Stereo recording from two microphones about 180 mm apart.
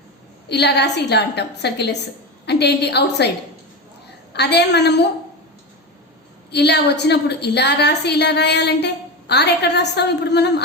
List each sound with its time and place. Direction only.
0.4 s a woman's voice: 65° left (ahead or behind)
6.5 s a woman's voice: 70° left (ahead or behind)